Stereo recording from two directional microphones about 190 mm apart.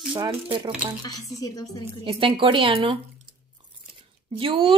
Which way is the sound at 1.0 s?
20° left (ahead or behind).